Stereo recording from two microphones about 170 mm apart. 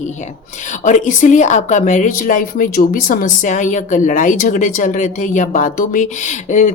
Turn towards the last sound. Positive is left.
turn(degrees=45)  # may be behind; listen again after turning